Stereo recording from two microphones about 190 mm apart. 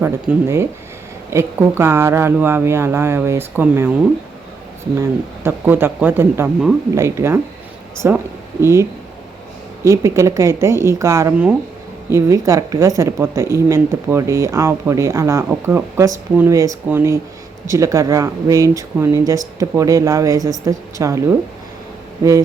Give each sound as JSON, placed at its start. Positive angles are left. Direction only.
{"t": 0.0, "sound": "speech", "side_deg": -15}
{"t": 4.9, "sound": "speech", "side_deg": -15}